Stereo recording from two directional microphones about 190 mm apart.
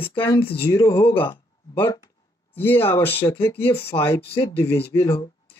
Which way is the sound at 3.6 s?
30° left (ahead or behind).